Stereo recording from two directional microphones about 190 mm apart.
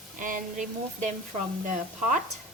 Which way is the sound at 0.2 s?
45° right (ahead or behind).